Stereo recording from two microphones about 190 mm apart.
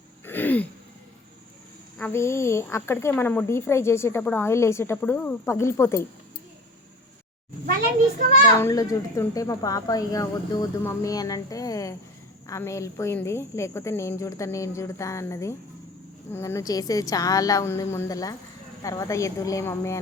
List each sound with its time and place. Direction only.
0.3 s throat clearing: 10° left (ahead or behind)
2.0 s a woman's voice: 10° left (ahead or behind)
8.5 s a woman's voice: 15° left (ahead or behind)